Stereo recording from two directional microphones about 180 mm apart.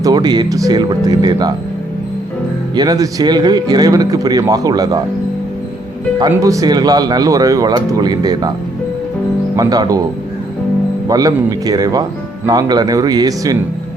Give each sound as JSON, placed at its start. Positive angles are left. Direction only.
{"t": 0.0, "sound": "speech", "side_deg": -25}
{"t": 2.7, "sound": "speech", "side_deg": -20}
{"t": 6.1, "sound": "speech", "side_deg": -20}
{"t": 9.6, "sound": "speech", "side_deg": -20}
{"t": 11.1, "sound": "speech", "side_deg": -20}